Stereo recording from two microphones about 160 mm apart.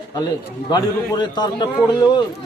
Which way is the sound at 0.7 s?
25° left (ahead or behind).